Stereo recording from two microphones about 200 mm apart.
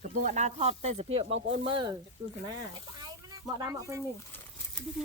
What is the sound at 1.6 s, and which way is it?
Speech, 25° right (ahead or behind).